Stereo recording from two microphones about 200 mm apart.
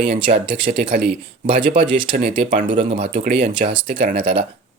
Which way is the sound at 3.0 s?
40° right (ahead or behind).